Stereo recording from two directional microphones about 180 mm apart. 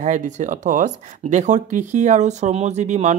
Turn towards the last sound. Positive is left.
turn(degrees=-40)  # may be behind; listen again after turning